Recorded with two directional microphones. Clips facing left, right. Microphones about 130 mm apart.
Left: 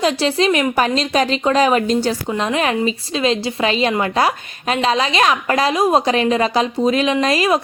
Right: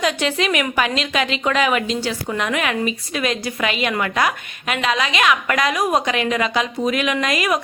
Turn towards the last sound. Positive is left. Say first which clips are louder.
# left 4 dB
turn(degrees=30)  # may be behind; listen again after turning